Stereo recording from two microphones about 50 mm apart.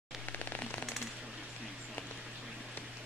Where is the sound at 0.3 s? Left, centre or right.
Left.